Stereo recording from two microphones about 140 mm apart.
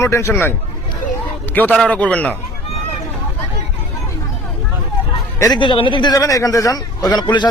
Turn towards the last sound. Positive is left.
turn(degrees=30)  # may be behind; listen again after turning